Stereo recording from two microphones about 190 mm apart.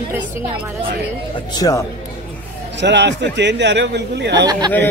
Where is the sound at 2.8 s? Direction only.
65° right (ahead or behind).